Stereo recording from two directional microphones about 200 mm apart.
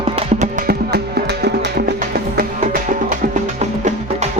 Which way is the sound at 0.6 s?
55° right (ahead or behind).